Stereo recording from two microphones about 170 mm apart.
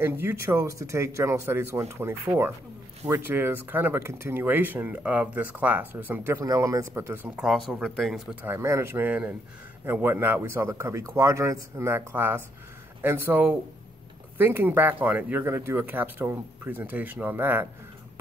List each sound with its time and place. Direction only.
0.0 s speech: 15° right (ahead or behind)